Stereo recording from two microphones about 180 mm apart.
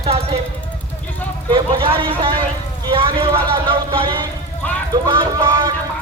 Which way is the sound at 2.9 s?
30° right (ahead or behind).